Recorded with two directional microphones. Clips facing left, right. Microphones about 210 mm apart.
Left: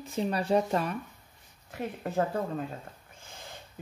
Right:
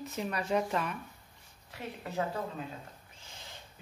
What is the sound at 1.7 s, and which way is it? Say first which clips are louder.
Speech: left 7 dB; 50° left (ahead or behind).